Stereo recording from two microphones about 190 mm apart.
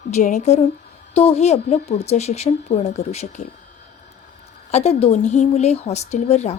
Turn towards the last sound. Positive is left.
turn(degrees=35)  # may be behind; listen again after turning